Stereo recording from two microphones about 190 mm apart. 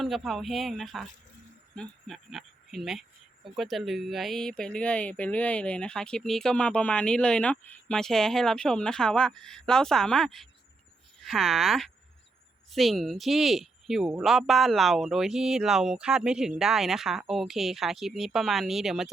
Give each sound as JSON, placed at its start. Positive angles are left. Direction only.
{"t": 0.0, "sound": "speech", "side_deg": 0}